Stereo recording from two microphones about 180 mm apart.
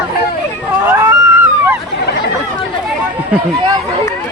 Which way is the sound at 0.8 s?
15° right (ahead or behind).